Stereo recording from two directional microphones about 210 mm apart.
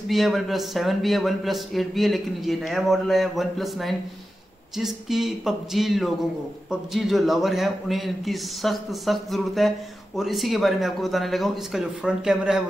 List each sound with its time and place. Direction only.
0.1 s a man's voice: centre (ahead or behind)